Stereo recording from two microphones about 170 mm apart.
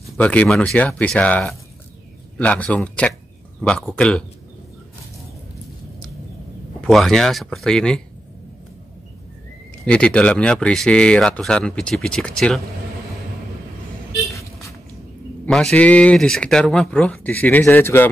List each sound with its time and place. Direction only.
0.2 s speech: 5° left (ahead or behind)
6.8 s speech: centre (ahead or behind)
9.8 s speech: 5° left (ahead or behind)
14.1 s vehicle: 20° left (ahead or behind)
15.4 s speech: 5° left (ahead or behind)